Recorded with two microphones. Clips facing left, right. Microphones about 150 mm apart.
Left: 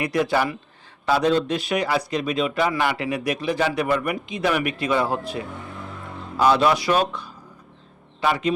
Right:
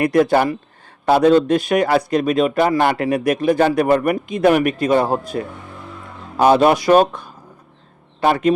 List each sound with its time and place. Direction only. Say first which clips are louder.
0.0 s speech: right 7 dB; 50° right (ahead or behind)